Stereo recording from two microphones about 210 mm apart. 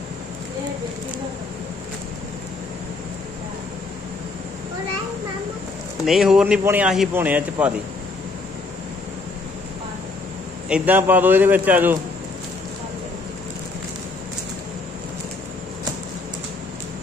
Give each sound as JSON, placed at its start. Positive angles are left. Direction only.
{"t": 6.0, "sound": "speech", "side_deg": 0}
{"t": 10.7, "sound": "speech", "side_deg": -10}